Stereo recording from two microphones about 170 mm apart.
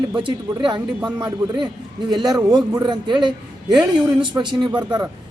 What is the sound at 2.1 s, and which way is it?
Speech, 25° right (ahead or behind).